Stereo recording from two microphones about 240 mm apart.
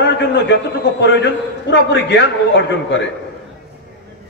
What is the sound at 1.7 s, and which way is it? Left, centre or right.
Speech, left.